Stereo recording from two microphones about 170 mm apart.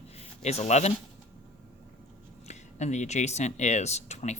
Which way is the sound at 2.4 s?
40° left (ahead or behind).